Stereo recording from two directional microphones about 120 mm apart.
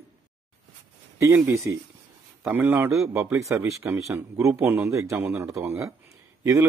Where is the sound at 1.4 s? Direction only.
25° right (ahead or behind).